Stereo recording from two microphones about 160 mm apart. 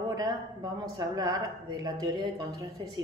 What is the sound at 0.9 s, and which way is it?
Speech, 25° right (ahead or behind).